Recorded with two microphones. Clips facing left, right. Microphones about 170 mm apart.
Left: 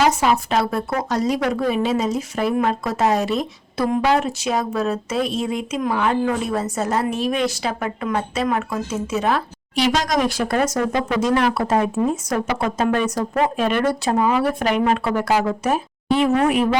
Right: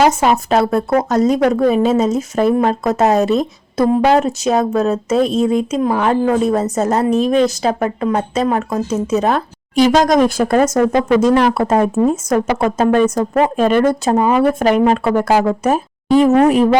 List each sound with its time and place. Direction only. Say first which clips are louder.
0.0 s a woman's voice: right 4 dB; 50° right (ahead or behind)